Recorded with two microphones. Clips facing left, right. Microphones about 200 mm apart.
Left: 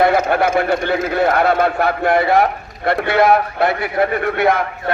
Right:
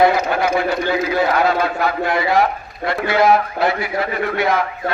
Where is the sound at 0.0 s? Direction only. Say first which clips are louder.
Left 1 dB; 55° left (ahead or behind).